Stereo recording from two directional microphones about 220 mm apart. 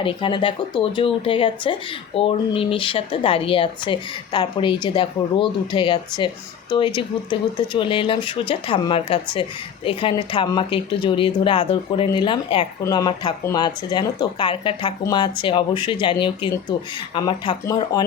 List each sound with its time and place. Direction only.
0.0 s speech: 25° left (ahead or behind)